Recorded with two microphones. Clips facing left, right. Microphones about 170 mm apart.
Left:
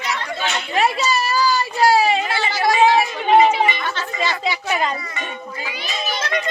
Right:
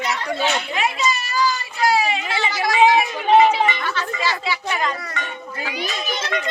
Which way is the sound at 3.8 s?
25° left (ahead or behind).